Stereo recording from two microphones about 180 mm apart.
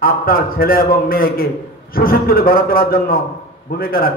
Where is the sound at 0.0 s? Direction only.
55° left (ahead or behind).